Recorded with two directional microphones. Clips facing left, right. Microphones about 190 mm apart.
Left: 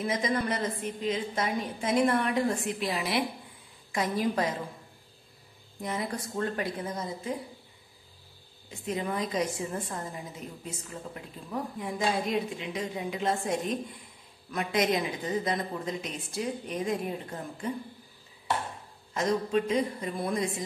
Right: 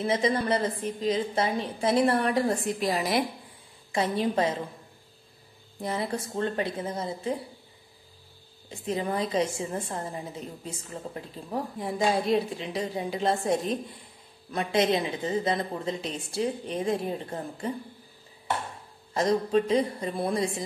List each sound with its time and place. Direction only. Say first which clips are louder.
0.0 s a woman's voice: right 3 dB; 30° right (ahead or behind)
3.9 s a woman's voice: right 2 dB; 30° right (ahead or behind)
5.8 s a woman's voice: right 3 dB; 30° right (ahead or behind)
8.6 s a woman's voice: right 3 dB; 30° right (ahead or behind)
19.1 s a woman's voice: right 3 dB; 35° right (ahead or behind)